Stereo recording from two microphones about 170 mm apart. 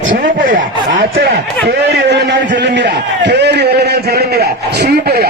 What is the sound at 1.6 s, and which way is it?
A man's voice, 80° right.